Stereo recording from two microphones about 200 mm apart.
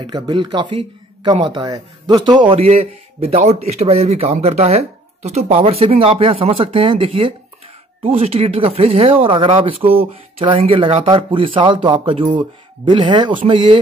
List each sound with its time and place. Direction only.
0.0 s speech: 25° right (ahead or behind)